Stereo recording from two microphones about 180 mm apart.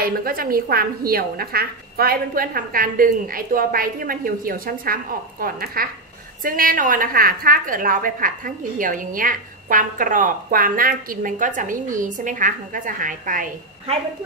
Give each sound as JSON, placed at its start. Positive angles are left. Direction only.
{"t": 0.0, "sound": "a woman's voice", "side_deg": -55}